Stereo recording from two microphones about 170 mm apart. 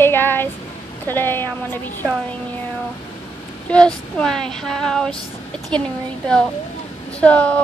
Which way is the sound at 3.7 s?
5° left (ahead or behind).